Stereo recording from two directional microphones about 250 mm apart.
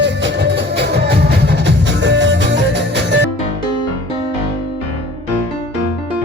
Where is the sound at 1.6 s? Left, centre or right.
Right.